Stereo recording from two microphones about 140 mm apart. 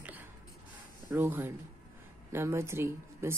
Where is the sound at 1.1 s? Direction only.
15° right (ahead or behind).